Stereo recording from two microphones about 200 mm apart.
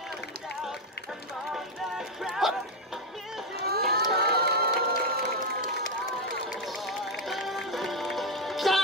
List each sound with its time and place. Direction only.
1.5 s a sound: centre (ahead or behind)
3.5 s run: 50° right (ahead or behind)
4.1 s music: 50° right (ahead or behind)
6.5 s music: centre (ahead or behind)